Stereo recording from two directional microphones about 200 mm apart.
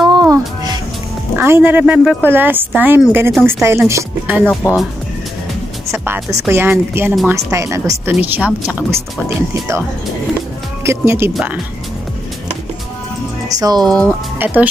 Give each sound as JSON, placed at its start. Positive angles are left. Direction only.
{"t": 0.0, "sound": "music", "side_deg": -20}
{"t": 1.4, "sound": "speech", "side_deg": -10}
{"t": 5.9, "sound": "speech", "side_deg": -10}
{"t": 10.8, "sound": "speech", "side_deg": -15}
{"t": 13.6, "sound": "speech", "side_deg": -20}
{"t": 13.8, "sound": "speech", "side_deg": 5}
{"t": 14.4, "sound": "speech", "side_deg": -10}